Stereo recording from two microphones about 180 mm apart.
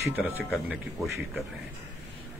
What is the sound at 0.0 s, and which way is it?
Speech, 10° right (ahead or behind).